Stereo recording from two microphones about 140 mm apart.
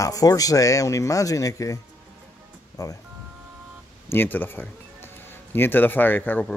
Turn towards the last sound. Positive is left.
turn(degrees=10)  # may be behind; listen again after turning